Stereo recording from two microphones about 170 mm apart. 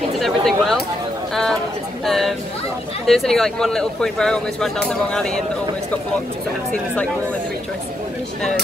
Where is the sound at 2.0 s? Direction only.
Centre (ahead or behind).